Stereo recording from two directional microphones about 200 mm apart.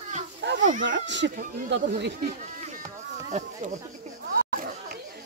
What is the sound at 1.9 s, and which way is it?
Speech, 50° right (ahead or behind).